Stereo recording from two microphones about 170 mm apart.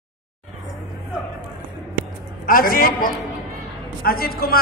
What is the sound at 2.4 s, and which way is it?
A man's voice, 60° left (ahead or behind).